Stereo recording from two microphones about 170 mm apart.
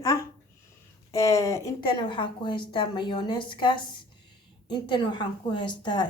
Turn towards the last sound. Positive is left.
turn(degrees=25)  # may be behind; listen again after turning